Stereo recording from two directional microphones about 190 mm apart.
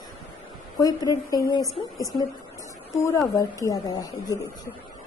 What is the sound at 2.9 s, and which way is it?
A woman's voice, 15° left (ahead or behind).